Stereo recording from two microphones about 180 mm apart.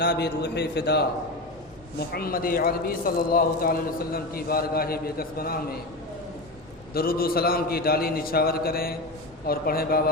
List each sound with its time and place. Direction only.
0.0 s a man's voice: 60° left (ahead or behind)
2.1 s a man's voice: 55° left (ahead or behind)
6.9 s a man's voice: 55° left (ahead or behind)